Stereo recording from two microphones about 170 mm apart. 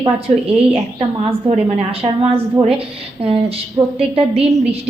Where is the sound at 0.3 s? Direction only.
40° right (ahead or behind).